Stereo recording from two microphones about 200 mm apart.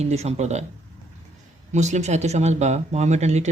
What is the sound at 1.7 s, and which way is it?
Speech, 35° right (ahead or behind).